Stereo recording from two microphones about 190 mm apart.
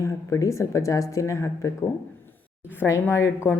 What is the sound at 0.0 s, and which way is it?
Speech, 15° left (ahead or behind).